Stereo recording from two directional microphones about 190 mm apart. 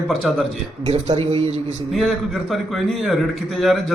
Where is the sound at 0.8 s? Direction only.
35° right (ahead or behind).